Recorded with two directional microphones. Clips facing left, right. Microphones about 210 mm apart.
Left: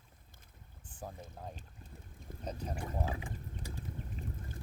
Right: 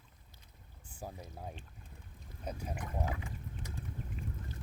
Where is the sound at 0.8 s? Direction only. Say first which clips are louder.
Even; 10° right (ahead or behind).